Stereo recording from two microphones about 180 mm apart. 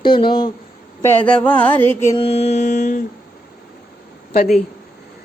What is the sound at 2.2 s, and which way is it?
Speech, 35° left (ahead or behind).